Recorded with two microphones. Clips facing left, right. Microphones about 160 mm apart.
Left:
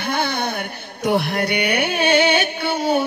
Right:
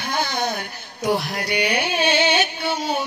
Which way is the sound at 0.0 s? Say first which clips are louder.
Left 2 dB; 60° left (ahead or behind).